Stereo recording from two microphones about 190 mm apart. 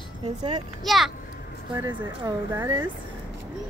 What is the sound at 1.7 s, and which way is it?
Speech, 25° right (ahead or behind).